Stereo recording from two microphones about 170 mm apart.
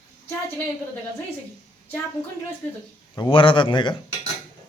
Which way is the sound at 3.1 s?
30° left (ahead or behind).